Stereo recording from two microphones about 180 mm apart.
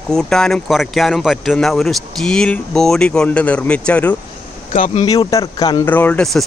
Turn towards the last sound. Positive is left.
turn(degrees=5)  # may be behind; listen again after turning